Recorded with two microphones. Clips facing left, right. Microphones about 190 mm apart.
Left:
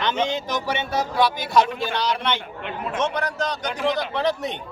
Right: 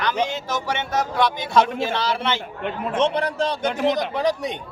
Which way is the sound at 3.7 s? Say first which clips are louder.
Right 1 dB; 45° right (ahead or behind).